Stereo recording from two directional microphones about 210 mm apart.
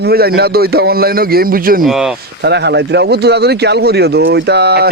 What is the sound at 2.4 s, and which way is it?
Speech, 55° right (ahead or behind).